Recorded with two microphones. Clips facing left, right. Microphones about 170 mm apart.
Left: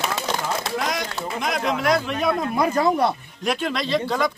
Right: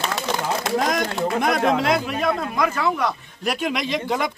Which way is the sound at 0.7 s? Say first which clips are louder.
Right 5 dB; 50° right (ahead or behind).